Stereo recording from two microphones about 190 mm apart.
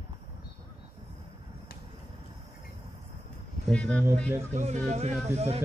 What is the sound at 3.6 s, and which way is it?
Speech, 5° left (ahead or behind).